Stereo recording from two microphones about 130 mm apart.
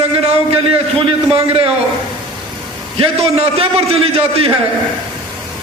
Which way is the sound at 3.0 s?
50° right (ahead or behind).